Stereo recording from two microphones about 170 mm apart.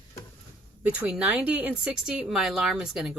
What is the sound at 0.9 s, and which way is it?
Speech, 5° right (ahead or behind).